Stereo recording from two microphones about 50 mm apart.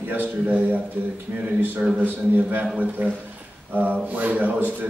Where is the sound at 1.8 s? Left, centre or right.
Right.